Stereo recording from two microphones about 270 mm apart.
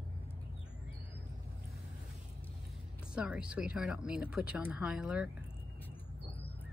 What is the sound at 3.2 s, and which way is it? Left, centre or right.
Speech, centre.